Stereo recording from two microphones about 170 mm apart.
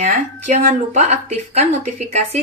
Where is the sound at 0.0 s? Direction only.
45° right (ahead or behind).